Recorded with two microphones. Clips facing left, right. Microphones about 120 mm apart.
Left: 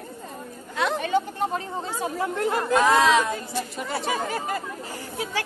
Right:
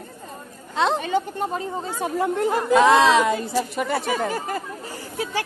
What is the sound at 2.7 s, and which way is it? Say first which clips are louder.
Speech: right 4 dB; 85° right.